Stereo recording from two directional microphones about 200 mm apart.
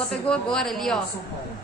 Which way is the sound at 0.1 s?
5° left (ahead or behind).